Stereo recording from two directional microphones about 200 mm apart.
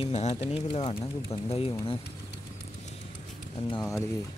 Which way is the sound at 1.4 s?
30° left (ahead or behind).